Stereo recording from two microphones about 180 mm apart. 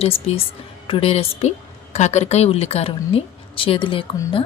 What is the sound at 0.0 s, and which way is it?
A woman's voice, 35° left (ahead or behind).